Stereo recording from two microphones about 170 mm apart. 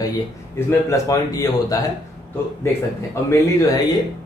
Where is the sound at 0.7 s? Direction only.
15° left (ahead or behind).